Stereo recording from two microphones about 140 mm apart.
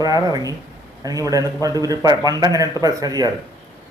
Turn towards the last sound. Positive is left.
turn(degrees=-25)  # may be behind; listen again after turning